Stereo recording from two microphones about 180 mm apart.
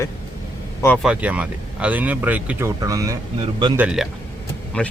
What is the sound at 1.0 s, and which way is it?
Speech, 5° right (ahead or behind).